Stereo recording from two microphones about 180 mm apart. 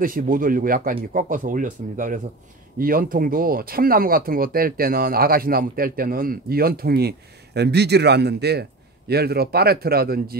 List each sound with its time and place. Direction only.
0.0 s speech: 50° right (ahead or behind)